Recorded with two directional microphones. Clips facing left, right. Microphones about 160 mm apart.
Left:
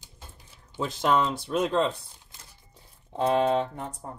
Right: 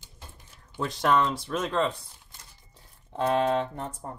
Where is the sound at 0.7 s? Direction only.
20° left (ahead or behind).